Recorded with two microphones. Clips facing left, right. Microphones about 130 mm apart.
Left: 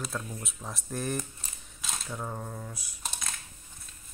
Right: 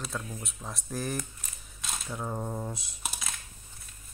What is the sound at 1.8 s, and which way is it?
Cutlery, centre (ahead or behind).